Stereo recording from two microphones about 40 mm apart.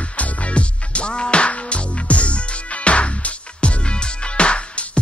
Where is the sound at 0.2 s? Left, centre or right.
Left.